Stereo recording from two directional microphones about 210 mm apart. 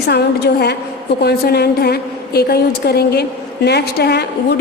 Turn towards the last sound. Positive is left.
turn(degrees=50)  # may be behind; listen again after turning